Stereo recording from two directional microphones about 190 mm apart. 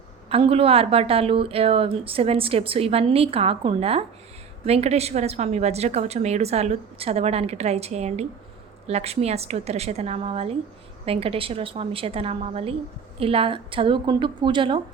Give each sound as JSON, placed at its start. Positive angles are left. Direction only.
{"t": 0.3, "sound": "a woman's voice", "side_deg": -30}